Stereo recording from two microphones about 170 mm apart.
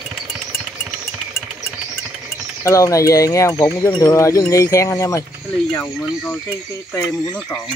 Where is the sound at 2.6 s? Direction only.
20° left (ahead or behind).